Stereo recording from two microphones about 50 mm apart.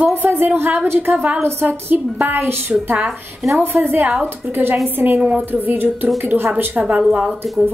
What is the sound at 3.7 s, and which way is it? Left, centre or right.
Speech, right.